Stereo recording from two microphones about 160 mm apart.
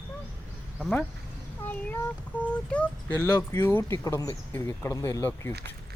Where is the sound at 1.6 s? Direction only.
15° left (ahead or behind).